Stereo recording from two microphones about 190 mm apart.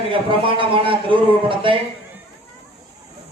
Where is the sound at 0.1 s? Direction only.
25° right (ahead or behind).